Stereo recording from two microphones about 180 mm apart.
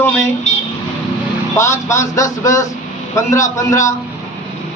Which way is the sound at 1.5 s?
15° left (ahead or behind).